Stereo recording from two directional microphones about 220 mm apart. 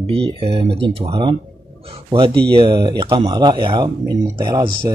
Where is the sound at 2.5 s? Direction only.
20° right (ahead or behind).